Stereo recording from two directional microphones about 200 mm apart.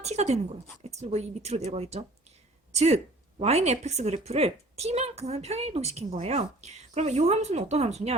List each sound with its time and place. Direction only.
0.0 s a woman's voice: 35° right (ahead or behind)